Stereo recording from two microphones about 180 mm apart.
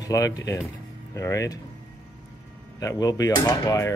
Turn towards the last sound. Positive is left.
turn(degrees=20)  # may be behind; listen again after turning